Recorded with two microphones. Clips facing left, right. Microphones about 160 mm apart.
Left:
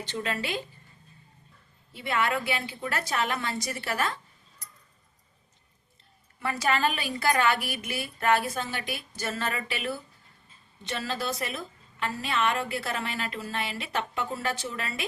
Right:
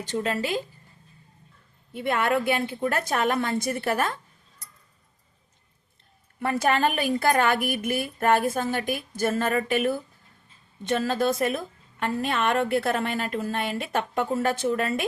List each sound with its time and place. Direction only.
0.1 s speech: 40° right (ahead or behind)
1.9 s a woman's voice: 50° right (ahead or behind)
6.4 s a woman's voice: 50° right (ahead or behind)